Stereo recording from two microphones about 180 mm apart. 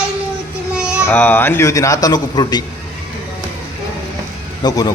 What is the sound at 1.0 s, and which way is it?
A man's voice, 10° left (ahead or behind).